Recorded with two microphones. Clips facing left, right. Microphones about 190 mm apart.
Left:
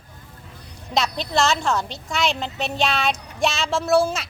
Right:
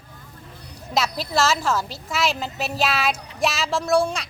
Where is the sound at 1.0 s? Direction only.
5° right (ahead or behind).